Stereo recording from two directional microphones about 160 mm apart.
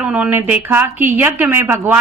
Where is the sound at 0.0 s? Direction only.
10° right (ahead or behind).